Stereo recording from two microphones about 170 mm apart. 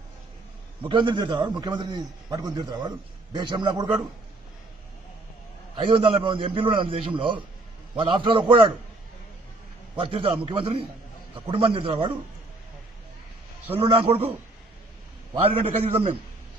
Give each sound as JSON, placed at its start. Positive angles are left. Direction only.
{"t": 0.8, "sound": "a man's voice", "side_deg": -30}
{"t": 5.8, "sound": "a man's voice", "side_deg": -30}
{"t": 9.9, "sound": "a man's voice", "side_deg": -35}
{"t": 13.7, "sound": "a man's voice", "side_deg": -35}
{"t": 15.4, "sound": "a man's voice", "side_deg": -35}